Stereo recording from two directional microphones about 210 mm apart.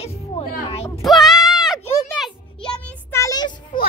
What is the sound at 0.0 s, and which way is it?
Music, 30° left (ahead or behind).